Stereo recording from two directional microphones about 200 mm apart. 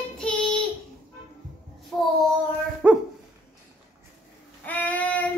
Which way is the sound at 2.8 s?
10° right (ahead or behind).